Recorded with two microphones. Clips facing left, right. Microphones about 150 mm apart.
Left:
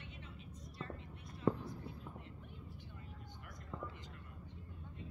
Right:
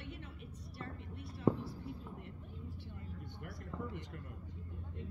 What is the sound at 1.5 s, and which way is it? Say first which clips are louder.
Whispering: right 3 dB; 15° right (ahead or behind).